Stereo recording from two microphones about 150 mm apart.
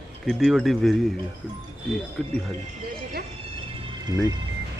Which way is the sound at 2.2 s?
Centre (ahead or behind).